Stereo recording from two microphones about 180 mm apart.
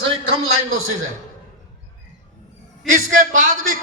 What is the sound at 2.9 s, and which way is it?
Speech, 50° right (ahead or behind).